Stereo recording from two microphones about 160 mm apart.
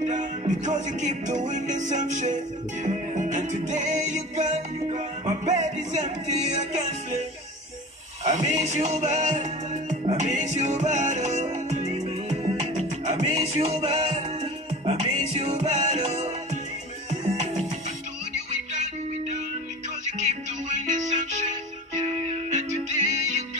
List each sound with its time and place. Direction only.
0.0 s music: 50° right (ahead or behind)
8.2 s speech: 45° right (ahead or behind)
8.6 s music: 45° right (ahead or behind)
13.7 s music: 30° right (ahead or behind)
14.9 s music: 45° right (ahead or behind)
20.6 s music: 50° right (ahead or behind)
22.3 s music: 50° right (ahead or behind)